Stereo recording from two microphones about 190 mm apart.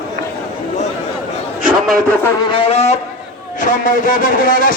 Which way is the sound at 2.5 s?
30° left (ahead or behind).